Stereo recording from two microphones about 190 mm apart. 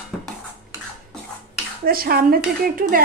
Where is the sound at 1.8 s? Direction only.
50° right (ahead or behind).